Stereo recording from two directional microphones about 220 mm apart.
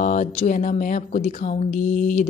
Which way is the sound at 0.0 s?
35° left (ahead or behind).